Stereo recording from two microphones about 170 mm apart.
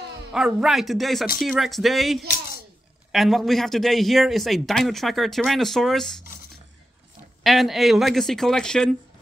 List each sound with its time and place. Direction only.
0.3 s a man's voice: 5° right (ahead or behind)
7.4 s a man's voice: centre (ahead or behind)